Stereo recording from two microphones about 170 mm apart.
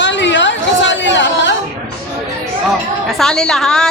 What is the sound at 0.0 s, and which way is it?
Chatter, 90° left.